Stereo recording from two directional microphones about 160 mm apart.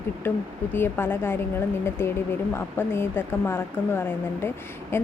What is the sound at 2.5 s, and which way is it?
A woman's voice, 15° left (ahead or behind).